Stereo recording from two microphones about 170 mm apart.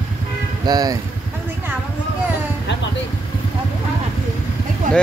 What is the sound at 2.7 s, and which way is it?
Vehicle, 90° left.